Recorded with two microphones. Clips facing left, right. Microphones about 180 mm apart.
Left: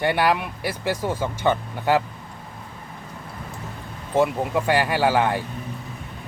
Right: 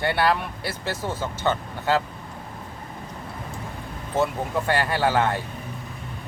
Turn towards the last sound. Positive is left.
turn(degrees=10)  # may be behind; listen again after turning